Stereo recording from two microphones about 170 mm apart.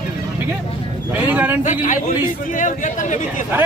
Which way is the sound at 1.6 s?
50° left (ahead or behind).